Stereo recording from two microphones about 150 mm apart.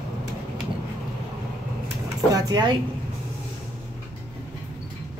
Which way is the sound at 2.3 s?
25° right (ahead or behind).